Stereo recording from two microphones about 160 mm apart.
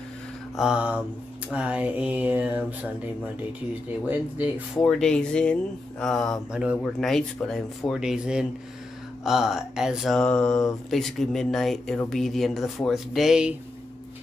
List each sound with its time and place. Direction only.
0.6 s speech: 5° right (ahead or behind)
4.0 s speech: 10° right (ahead or behind)
4.7 s speech: 5° left (ahead or behind)